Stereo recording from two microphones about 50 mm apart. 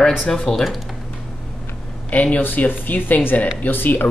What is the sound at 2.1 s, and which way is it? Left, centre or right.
Speech, left.